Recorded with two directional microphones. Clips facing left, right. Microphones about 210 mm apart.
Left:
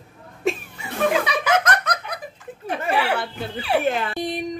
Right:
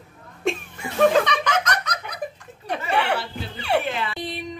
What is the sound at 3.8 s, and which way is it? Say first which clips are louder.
Dog: left 5 dB; 45° left (ahead or behind).